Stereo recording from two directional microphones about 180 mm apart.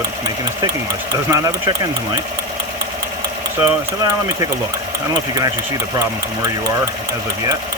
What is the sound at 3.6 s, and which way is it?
Speech, 20° right (ahead or behind).